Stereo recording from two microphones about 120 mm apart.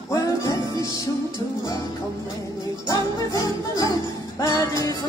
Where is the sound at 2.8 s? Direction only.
25° left (ahead or behind).